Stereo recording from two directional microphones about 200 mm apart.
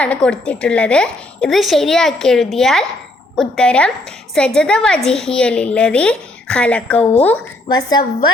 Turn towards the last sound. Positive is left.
turn(degrees=20)  # may be behind; listen again after turning